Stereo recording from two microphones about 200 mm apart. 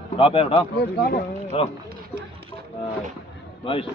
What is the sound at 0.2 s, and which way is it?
Speech, 25° left (ahead or behind).